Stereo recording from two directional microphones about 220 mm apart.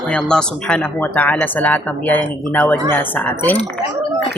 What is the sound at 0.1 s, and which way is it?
Speech, 5° left (ahead or behind).